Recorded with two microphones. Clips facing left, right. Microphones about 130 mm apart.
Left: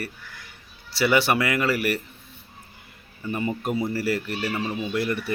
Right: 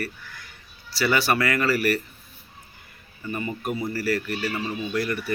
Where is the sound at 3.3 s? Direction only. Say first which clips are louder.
Left 2 dB; 25° left (ahead or behind).